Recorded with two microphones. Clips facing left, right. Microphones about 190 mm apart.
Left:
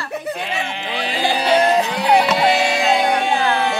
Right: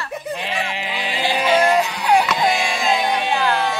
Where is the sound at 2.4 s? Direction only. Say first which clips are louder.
Left 3 dB; 70° left (ahead or behind).